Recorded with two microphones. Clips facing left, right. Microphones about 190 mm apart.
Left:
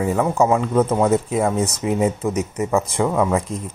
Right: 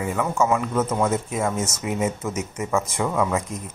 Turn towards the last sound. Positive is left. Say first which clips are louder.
# left 4 dB
turn(degrees=30)  # may be behind; listen again after turning